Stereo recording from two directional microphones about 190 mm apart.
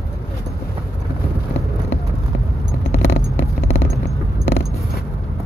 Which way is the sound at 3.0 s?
70° left (ahead or behind).